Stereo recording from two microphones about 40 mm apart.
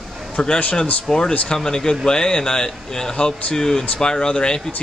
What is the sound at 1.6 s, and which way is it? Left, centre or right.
A man's voice, centre.